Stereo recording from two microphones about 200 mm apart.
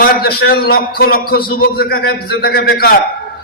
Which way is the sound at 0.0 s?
50° left (ahead or behind).